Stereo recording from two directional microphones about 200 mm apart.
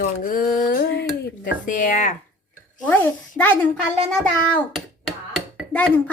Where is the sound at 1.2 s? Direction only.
40° left (ahead or behind).